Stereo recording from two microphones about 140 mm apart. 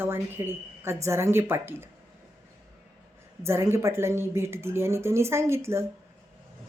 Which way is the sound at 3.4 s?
20° right (ahead or behind).